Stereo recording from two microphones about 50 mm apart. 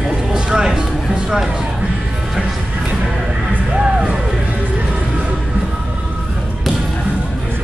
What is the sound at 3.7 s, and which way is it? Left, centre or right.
Music, centre.